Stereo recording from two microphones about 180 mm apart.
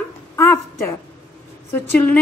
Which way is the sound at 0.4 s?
10° left (ahead or behind).